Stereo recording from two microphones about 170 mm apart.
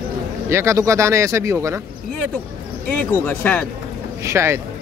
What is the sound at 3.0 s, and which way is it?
Speech, 10° left (ahead or behind).